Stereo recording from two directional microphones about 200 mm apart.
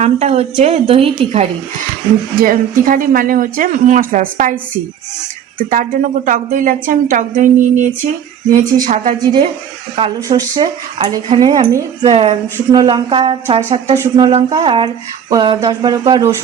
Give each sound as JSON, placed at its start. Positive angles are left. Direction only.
{"t": 0.0, "sound": "a woman's voice", "side_deg": -35}
{"t": 2.4, "sound": "speech", "side_deg": -45}
{"t": 5.7, "sound": "a woman's voice", "side_deg": -45}
{"t": 10.2, "sound": "speech", "side_deg": -20}